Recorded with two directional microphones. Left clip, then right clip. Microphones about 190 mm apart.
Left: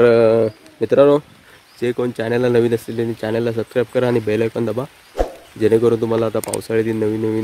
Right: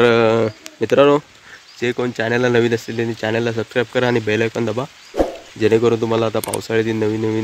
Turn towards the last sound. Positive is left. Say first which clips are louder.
# even
turn(degrees=-5)  # may be behind; listen again after turning